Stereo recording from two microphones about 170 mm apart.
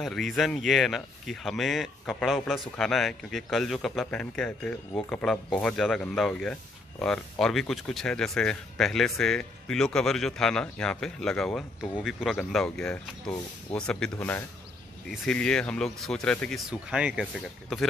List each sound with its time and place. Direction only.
0.0 s a man's voice: centre (ahead or behind)